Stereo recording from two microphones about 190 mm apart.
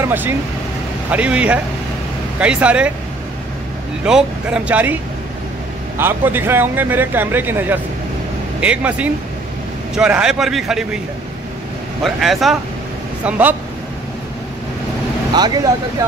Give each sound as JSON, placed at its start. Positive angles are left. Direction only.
{"t": 0.0, "sound": "speech", "side_deg": -10}
{"t": 4.0, "sound": "a man's voice", "side_deg": -5}
{"t": 5.9, "sound": "a man's voice", "side_deg": -10}
{"t": 12.0, "sound": "a man's voice", "side_deg": 0}
{"t": 15.3, "sound": "speech", "side_deg": -20}